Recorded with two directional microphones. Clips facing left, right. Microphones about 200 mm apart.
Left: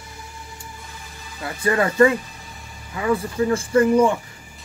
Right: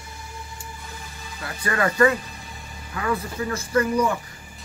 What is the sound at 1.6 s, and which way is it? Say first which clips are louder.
Speech: left 3 dB; 25° left (ahead or behind).